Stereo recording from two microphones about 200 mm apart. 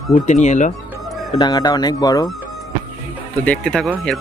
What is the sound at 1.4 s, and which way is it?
Speech, 20° left (ahead or behind).